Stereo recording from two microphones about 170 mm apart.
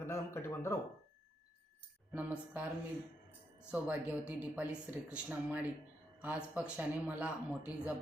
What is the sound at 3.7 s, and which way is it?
Speech, 5° right (ahead or behind).